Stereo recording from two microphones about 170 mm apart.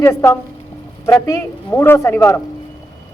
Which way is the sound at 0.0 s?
15° left (ahead or behind).